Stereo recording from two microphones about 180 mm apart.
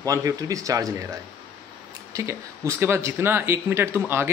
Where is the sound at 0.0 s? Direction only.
20° right (ahead or behind).